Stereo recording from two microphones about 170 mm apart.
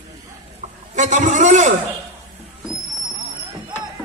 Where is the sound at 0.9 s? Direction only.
45° right (ahead or behind).